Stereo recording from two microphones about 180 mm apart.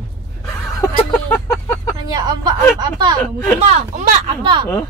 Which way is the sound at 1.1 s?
10° left (ahead or behind).